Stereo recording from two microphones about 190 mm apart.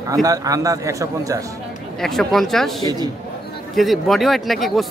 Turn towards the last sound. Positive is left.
turn(degrees=0)  # may be behind; listen again after turning